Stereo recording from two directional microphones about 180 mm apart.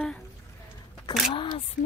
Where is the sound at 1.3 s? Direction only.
25° left (ahead or behind).